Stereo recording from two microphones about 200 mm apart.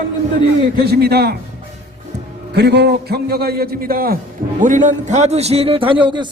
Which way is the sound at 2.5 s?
55° right (ahead or behind).